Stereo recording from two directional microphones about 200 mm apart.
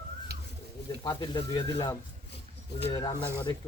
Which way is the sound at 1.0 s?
20° left (ahead or behind).